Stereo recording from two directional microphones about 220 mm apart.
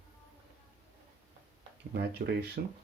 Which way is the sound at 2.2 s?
45° right (ahead or behind).